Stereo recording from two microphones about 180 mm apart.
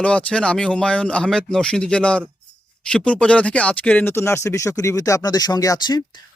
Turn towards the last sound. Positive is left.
turn(degrees=25)  # may be behind; listen again after turning